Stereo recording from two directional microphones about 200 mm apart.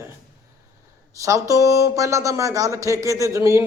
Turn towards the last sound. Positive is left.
turn(degrees=-15)  # may be behind; listen again after turning